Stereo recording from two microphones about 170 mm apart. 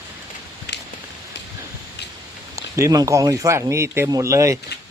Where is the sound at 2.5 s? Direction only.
20° right (ahead or behind).